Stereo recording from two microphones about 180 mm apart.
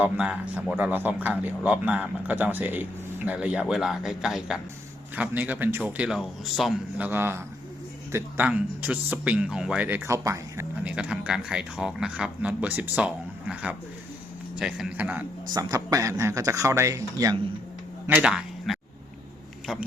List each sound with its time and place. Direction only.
0.0 s speech: 5° right (ahead or behind)
7.1 s speech: 10° right (ahead or behind)
15.5 s speech: 20° right (ahead or behind)
18.0 s speech: 5° right (ahead or behind)